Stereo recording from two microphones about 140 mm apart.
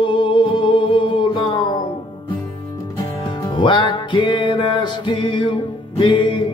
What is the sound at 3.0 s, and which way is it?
Music, 35° left (ahead or behind).